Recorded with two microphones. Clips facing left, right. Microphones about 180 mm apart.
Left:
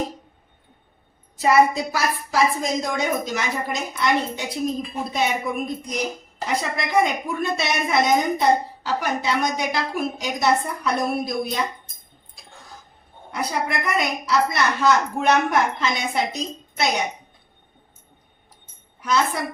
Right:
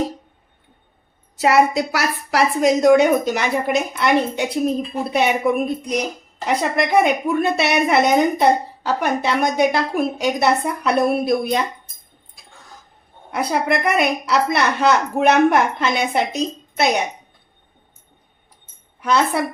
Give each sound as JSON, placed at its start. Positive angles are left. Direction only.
{"t": 1.4, "sound": "a woman's voice", "side_deg": -80}
{"t": 13.3, "sound": "a woman's voice", "side_deg": -60}
{"t": 19.0, "sound": "a woman's voice", "side_deg": -60}